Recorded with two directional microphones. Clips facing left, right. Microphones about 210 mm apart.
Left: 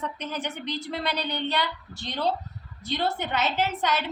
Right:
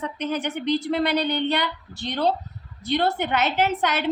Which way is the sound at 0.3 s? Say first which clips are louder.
Right 12 dB; 60° right (ahead or behind).